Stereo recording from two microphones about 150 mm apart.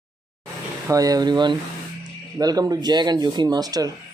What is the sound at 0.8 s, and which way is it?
Speech, 25° right (ahead or behind).